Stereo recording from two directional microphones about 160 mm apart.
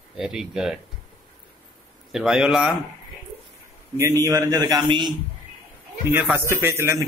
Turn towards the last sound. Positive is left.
turn(degrees=-15)  # may be behind; listen again after turning